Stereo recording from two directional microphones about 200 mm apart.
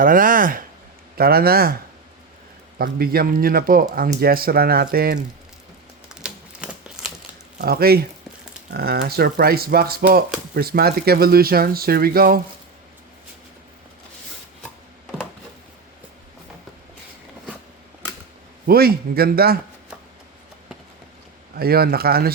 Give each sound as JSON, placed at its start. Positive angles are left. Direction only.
{"t": 0.0, "sound": "speech", "side_deg": -45}
{"t": 2.7, "sound": "speech", "side_deg": -50}
{"t": 6.1, "sound": "typewriter", "side_deg": -5}
{"t": 7.6, "sound": "speech", "side_deg": -50}
{"t": 18.6, "sound": "speech", "side_deg": -50}
{"t": 21.6, "sound": "speech", "side_deg": -50}